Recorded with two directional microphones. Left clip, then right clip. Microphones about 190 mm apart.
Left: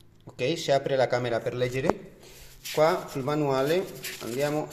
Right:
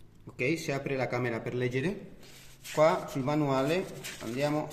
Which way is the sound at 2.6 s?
5° left (ahead or behind).